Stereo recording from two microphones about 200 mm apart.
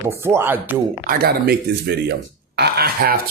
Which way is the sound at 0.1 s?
15° right (ahead or behind).